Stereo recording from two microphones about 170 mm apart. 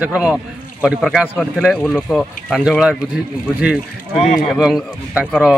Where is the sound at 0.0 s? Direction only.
5° right (ahead or behind).